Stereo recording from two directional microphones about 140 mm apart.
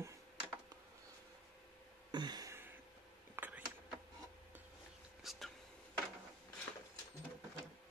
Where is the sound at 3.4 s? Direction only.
10° right (ahead or behind).